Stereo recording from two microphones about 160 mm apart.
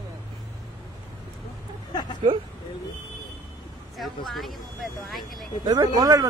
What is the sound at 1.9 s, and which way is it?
Speech, 25° left (ahead or behind).